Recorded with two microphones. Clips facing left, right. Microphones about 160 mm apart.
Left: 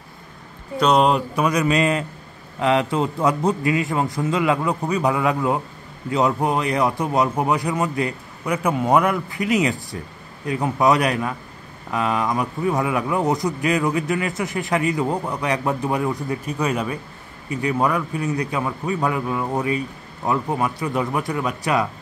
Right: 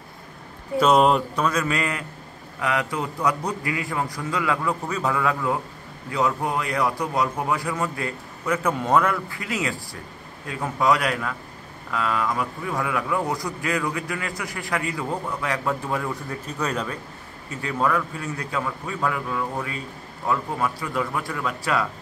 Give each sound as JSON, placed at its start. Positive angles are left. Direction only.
{"t": 0.7, "sound": "speech", "side_deg": -5}
{"t": 1.3, "sound": "a man's voice", "side_deg": 15}